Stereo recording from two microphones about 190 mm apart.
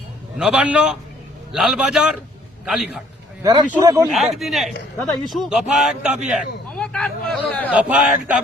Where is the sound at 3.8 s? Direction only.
15° right (ahead or behind).